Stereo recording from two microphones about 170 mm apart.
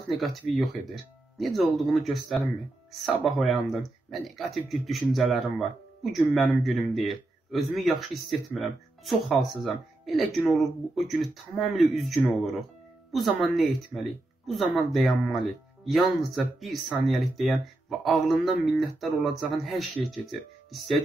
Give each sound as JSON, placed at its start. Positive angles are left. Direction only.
{"t": 0.2, "sound": "speech", "side_deg": 0}